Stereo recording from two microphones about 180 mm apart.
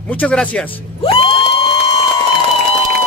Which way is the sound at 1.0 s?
30° left (ahead or behind).